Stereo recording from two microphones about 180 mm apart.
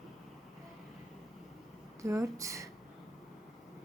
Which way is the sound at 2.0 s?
15° right (ahead or behind).